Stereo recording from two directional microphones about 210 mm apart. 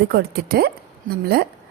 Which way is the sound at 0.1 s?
50° right (ahead or behind).